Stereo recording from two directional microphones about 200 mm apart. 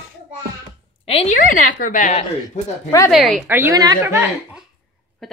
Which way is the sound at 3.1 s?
Centre (ahead or behind).